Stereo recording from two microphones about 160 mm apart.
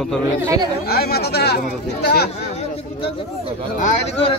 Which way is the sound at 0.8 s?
75° left (ahead or behind).